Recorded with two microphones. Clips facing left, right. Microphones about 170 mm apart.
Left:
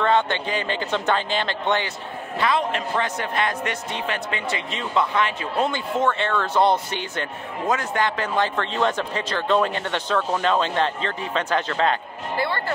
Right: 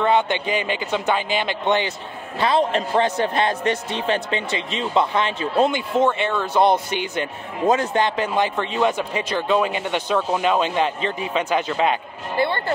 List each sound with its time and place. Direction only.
0.0 s speech: 15° right (ahead or behind)
2.3 s a man's voice: 30° right (ahead or behind); by 12.0 s 10° right (ahead or behind)
12.4 s a man's voice: 25° right (ahead or behind)